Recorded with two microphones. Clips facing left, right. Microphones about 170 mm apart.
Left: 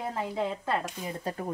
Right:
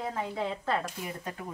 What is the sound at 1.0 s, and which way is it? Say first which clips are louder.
Speech: left 4 dB; 35° left (ahead or behind).